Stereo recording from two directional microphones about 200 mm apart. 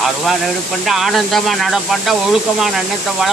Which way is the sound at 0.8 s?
Centre (ahead or behind).